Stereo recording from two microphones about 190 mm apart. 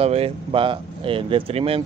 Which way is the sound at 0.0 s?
30° right (ahead or behind).